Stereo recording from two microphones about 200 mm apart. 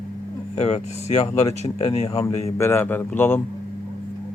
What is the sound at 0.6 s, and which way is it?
Speech, 30° left (ahead or behind).